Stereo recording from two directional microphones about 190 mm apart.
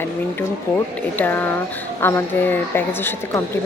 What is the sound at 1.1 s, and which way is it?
A woman's voice, 10° left (ahead or behind).